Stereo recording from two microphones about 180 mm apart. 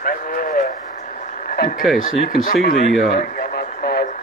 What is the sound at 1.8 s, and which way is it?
Speech, centre (ahead or behind).